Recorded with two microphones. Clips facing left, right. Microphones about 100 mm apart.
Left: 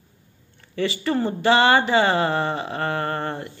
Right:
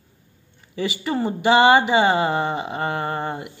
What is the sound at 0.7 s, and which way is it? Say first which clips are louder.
Speech: left 1 dB; 15° right (ahead or behind).